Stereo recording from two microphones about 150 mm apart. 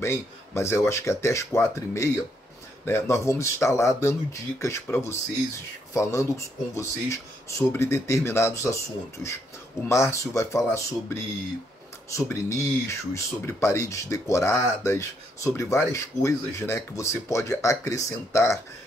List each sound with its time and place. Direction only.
0.0 s speech: 15° left (ahead or behind)
9.8 s speech: 20° left (ahead or behind)
12.3 s speech: 20° left (ahead or behind)